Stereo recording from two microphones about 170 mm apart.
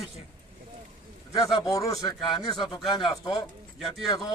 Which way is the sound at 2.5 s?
25° left (ahead or behind).